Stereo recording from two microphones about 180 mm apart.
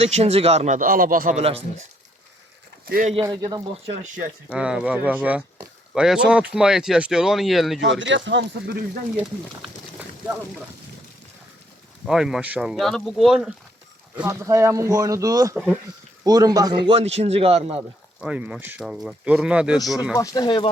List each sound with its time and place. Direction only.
0.0 s speech: 35° right (ahead or behind); by 1.4 s 50° right (ahead or behind)
1.4 s speech: 30° right (ahead or behind)
2.8 s speech: 55° right (ahead or behind)
3.2 s speech: 20° right (ahead or behind)
3.8 s speech: 45° right (ahead or behind)
4.5 s speech: 5° right (ahead or behind)
7.8 s speech: 90° right
9.1 s speech: centre (ahead or behind)
12.0 s speech: 5° right (ahead or behind)
14.2 s speech: 15° right (ahead or behind)
15.5 s speech: centre (ahead or behind)
16.2 s speech: 20° right (ahead or behind)
18.2 s speech: 5° right (ahead or behind)
20.1 s speech: 20° left (ahead or behind)